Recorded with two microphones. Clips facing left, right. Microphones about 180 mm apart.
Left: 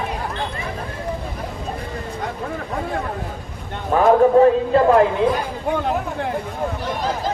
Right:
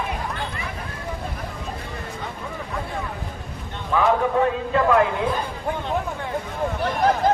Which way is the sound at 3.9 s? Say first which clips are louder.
Left 7 dB; 40° left (ahead or behind).